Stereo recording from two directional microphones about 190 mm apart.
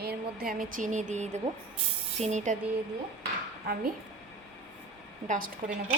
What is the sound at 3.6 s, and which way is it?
Speech, 55° right (ahead or behind).